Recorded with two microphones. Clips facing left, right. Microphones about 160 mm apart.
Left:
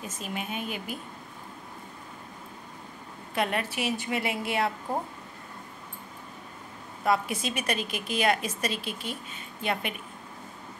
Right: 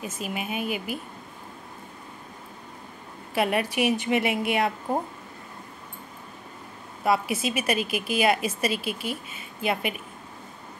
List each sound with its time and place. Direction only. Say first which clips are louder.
0.0 s a woman's voice: right 3 dB; 10° right (ahead or behind)
3.3 s a woman's voice: right 5 dB; 10° right (ahead or behind)
7.1 s a woman's voice: right 3 dB; 5° right (ahead or behind)